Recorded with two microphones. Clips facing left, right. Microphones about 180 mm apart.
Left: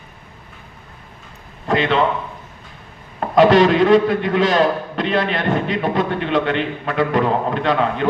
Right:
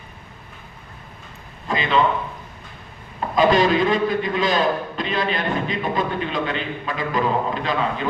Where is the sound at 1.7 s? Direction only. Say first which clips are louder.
Left 6 dB; 70° left (ahead or behind).